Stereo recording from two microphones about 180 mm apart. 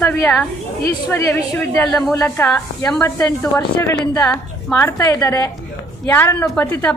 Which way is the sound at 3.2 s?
15° left (ahead or behind).